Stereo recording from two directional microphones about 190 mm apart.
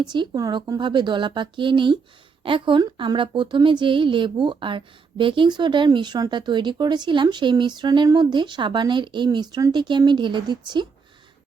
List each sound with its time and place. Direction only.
0.0 s a woman's voice: 20° right (ahead or behind)